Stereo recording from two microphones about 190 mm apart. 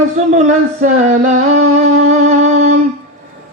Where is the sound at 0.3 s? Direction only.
40° right (ahead or behind).